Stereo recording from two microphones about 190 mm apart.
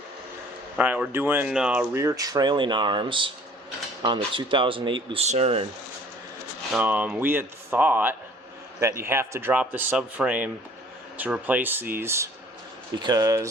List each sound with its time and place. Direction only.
0.8 s speech: 10° right (ahead or behind); by 5.6 s 35° right (ahead or behind)
6.7 s speech: 10° right (ahead or behind)